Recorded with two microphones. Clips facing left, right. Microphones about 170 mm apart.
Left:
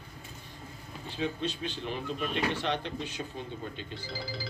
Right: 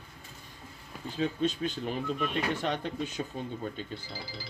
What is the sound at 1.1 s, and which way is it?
Speech, 45° right (ahead or behind).